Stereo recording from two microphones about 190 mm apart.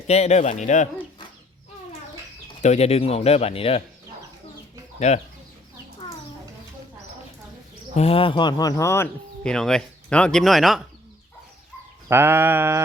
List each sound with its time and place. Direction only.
0.1 s speech: 35° left (ahead or behind)
2.6 s speech: 35° left (ahead or behind)
4.9 s speech: 35° left (ahead or behind)
7.9 s speech: 30° left (ahead or behind); by 10.8 s centre (ahead or behind)
12.0 s sheep: 10° right (ahead or behind)